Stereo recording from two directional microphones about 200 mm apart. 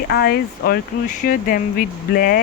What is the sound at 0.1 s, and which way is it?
Speech, 50° left (ahead or behind).